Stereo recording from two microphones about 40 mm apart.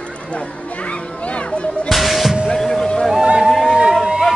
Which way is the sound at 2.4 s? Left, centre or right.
Centre.